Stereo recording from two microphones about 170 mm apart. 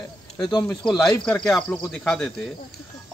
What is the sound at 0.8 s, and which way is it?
A man's voice, centre (ahead or behind).